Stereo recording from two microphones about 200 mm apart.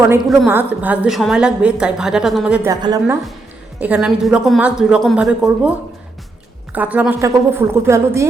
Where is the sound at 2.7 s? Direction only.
20° right (ahead or behind).